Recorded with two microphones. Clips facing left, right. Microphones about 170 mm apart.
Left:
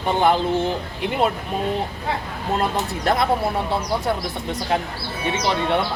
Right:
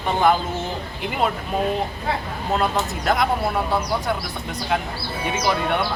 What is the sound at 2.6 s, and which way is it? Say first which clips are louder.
Speech: left 1 dB; 30° left (ahead or behind).